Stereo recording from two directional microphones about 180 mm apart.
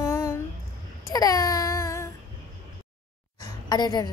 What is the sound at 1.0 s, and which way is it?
Baby cry, 20° left (ahead or behind).